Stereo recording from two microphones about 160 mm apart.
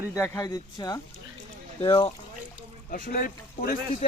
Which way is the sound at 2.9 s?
65° left (ahead or behind).